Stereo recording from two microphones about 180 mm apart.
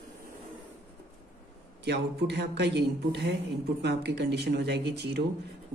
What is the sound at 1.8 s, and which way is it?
A woman's voice, 70° right (ahead or behind).